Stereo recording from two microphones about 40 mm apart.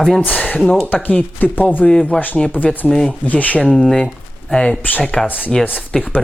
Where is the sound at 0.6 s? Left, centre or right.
Left.